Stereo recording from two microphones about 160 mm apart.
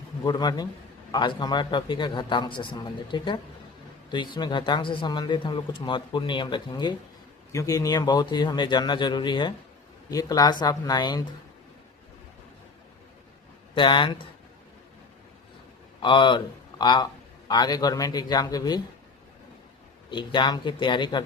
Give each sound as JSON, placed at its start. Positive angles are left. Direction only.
{"t": 0.3, "sound": "speech", "side_deg": 25}
{"t": 13.7, "sound": "speech", "side_deg": 30}
{"t": 16.0, "sound": "a man's voice", "side_deg": 30}
{"t": 20.1, "sound": "speech", "side_deg": 30}